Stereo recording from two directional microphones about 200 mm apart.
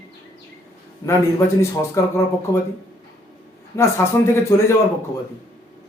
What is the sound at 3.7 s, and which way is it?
Speech, 15° left (ahead or behind).